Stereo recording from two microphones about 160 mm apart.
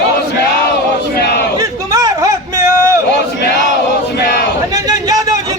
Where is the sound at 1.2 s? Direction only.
85° left.